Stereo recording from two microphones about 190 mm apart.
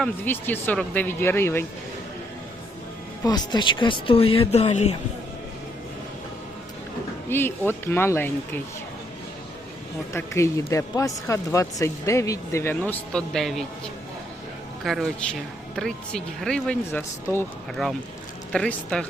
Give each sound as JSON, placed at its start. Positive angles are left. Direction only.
{"t": 0.0, "sound": "speech", "side_deg": 10}
{"t": 3.2, "sound": "speech", "side_deg": 20}
{"t": 7.3, "sound": "speech", "side_deg": 10}
{"t": 10.1, "sound": "speech", "side_deg": 15}